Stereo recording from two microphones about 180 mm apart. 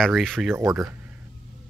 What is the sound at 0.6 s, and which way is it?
Speech, 15° right (ahead or behind).